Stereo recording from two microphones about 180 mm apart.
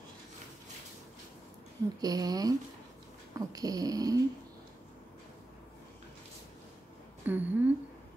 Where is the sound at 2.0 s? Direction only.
20° right (ahead or behind).